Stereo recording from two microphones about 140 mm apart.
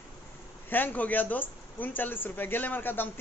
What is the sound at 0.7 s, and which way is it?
Speech, 15° left (ahead or behind).